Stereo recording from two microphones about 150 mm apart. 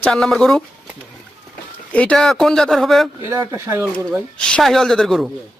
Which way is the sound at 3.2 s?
20° right (ahead or behind).